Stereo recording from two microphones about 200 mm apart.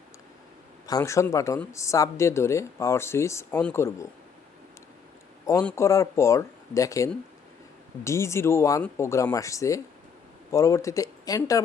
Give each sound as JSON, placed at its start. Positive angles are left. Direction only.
{"t": 0.9, "sound": "speech", "side_deg": 15}
{"t": 5.5, "sound": "speech", "side_deg": 15}